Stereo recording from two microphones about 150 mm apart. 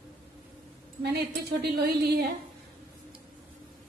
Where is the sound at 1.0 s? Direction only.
90° right.